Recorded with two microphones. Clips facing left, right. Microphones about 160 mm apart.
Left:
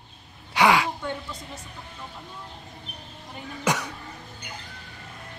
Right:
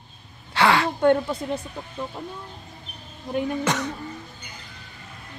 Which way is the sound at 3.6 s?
10° left (ahead or behind).